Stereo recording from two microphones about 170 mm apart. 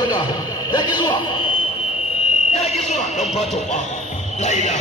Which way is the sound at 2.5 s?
40° left (ahead or behind).